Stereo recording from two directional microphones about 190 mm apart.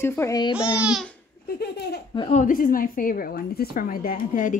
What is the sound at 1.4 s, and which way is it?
Laughter, 55° left (ahead or behind).